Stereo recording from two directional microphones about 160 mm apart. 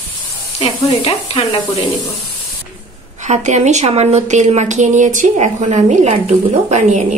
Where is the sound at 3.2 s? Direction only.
45° right (ahead or behind).